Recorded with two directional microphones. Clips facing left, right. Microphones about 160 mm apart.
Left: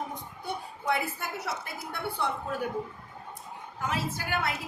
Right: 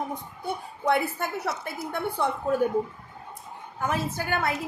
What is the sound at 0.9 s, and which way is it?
A woman's voice, 55° right (ahead or behind).